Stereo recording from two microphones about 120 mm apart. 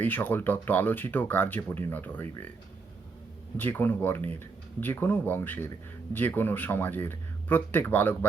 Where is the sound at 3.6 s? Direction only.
15° left (ahead or behind).